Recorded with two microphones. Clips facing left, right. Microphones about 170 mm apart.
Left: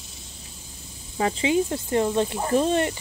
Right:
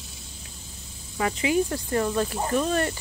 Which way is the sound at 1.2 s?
30° left (ahead or behind).